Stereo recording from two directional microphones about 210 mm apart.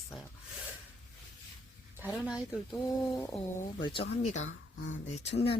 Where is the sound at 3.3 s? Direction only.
25° left (ahead or behind).